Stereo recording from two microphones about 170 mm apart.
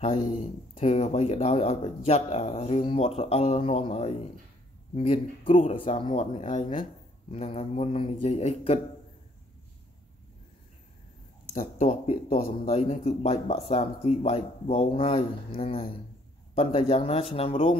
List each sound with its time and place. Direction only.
0.0 s speech: 40° left (ahead or behind)
11.5 s speech: 40° left (ahead or behind)